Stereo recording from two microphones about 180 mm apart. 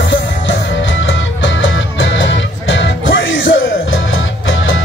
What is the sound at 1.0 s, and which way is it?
Music, 90° left.